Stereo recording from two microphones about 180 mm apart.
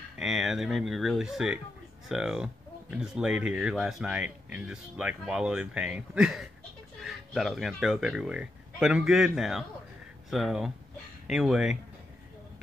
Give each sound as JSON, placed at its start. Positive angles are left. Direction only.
{"t": 0.2, "sound": "speech", "side_deg": -5}